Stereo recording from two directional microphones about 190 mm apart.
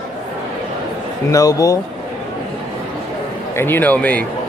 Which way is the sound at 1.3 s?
20° left (ahead or behind).